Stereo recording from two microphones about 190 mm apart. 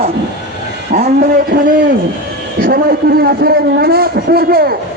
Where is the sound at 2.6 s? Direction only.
55° right (ahead or behind).